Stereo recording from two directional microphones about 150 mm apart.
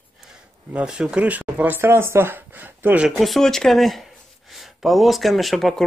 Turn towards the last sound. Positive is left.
turn(degrees=0)  # may be behind; listen again after turning